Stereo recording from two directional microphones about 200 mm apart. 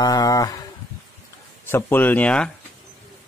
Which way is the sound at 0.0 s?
20° left (ahead or behind).